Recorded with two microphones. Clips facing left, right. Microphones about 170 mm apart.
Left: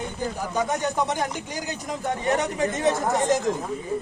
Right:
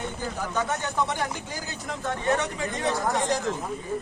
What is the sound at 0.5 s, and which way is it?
Speech, 15° left (ahead or behind).